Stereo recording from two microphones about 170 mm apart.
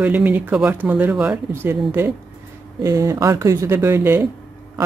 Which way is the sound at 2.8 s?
20° right (ahead or behind).